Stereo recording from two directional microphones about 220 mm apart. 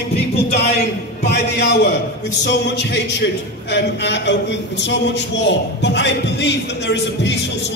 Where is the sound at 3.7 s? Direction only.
55° left (ahead or behind).